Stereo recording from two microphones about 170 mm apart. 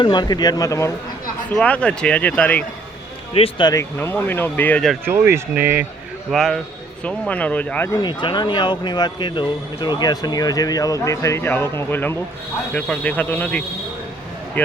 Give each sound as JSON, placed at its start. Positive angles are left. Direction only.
{"t": 0.0, "sound": "speech", "side_deg": 25}
{"t": 1.5, "sound": "speech", "side_deg": 5}
{"t": 3.3, "sound": "speech", "side_deg": 35}
{"t": 3.7, "sound": "speech", "side_deg": 15}
{"t": 5.0, "sound": "speech", "side_deg": -15}
{"t": 6.3, "sound": "a man's voice", "side_deg": 0}
{"t": 8.0, "sound": "speech", "side_deg": 25}